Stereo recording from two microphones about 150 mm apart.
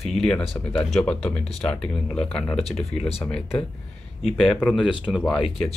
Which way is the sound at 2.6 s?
45° left (ahead or behind).